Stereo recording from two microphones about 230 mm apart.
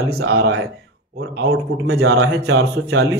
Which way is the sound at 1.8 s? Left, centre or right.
Right.